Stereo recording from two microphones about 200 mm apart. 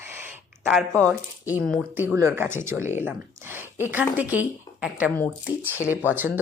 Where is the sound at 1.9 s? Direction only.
10° right (ahead or behind).